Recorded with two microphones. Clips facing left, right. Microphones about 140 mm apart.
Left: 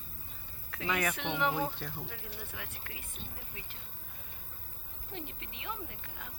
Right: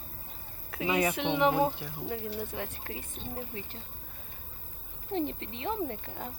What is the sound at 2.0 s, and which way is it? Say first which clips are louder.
Speech: right 11 dB; 35° right (ahead or behind).